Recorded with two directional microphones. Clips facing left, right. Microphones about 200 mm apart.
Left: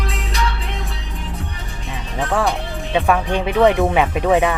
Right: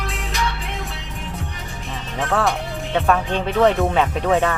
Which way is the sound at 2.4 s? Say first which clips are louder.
Left 1 dB; centre (ahead or behind).